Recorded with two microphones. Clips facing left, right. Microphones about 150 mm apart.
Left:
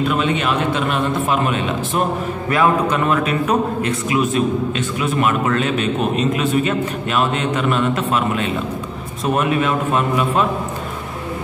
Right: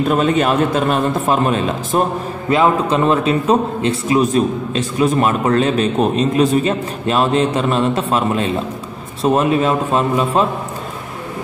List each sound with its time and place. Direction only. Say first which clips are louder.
0.1 s a man's voice: right 4 dB; 40° right (ahead or behind)
2.5 s a man's voice: right 3 dB; 25° right (ahead or behind)